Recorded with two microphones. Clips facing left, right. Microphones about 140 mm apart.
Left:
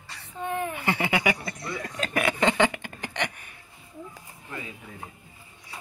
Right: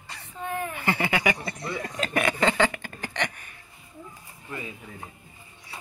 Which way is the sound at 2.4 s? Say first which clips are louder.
Left 2 dB; 15° left (ahead or behind).